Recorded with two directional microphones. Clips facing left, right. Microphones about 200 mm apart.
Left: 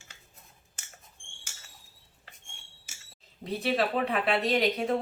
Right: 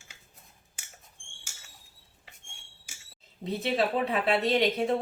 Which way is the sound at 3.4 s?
25° right (ahead or behind).